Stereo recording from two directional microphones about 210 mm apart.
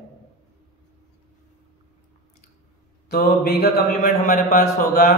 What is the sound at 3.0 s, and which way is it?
A man's voice, 50° left (ahead or behind).